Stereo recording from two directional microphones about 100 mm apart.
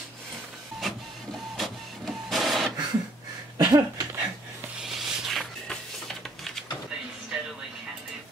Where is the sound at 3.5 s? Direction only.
40° right (ahead or behind).